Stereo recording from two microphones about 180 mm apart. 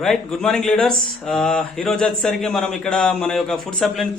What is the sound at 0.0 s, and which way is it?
Speech, centre (ahead or behind).